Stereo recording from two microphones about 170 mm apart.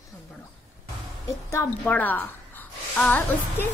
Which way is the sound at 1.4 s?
15° left (ahead or behind).